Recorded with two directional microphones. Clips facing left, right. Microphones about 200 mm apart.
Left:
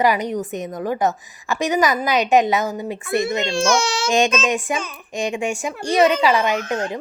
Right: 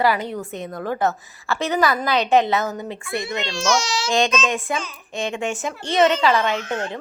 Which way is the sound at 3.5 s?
55° left (ahead or behind).